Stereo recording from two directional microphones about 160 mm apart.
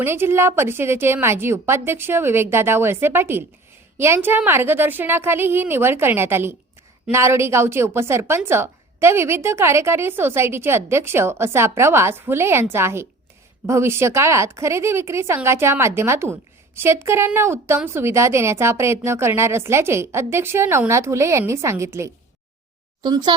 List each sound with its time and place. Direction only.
0.0 s a child's voice: 15° right (ahead or behind)